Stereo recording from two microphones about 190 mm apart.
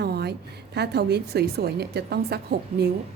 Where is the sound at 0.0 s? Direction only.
60° right (ahead or behind).